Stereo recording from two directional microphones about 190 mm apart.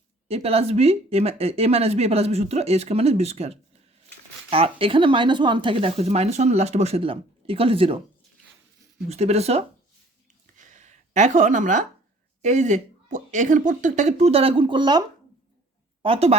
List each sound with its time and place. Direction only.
0.3 s speech: 30° right (ahead or behind)
9.0 s speech: 35° right (ahead or behind)
10.6 s a sound: 40° right (ahead or behind)
12.4 s speech: 40° right (ahead or behind); by 15.0 s 25° right (ahead or behind)
16.0 s speech: 30° right (ahead or behind)